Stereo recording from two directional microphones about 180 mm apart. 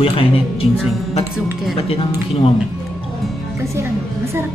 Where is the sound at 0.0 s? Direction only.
30° left (ahead or behind).